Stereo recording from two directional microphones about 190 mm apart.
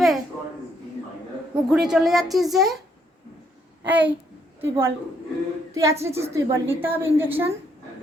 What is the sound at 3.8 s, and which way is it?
A child's voice, 10° right (ahead or behind).